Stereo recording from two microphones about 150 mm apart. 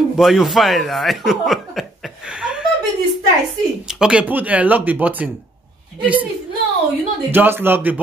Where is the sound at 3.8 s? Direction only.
5° right (ahead or behind).